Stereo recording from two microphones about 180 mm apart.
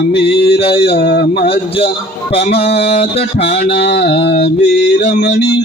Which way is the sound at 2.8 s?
35° left (ahead or behind).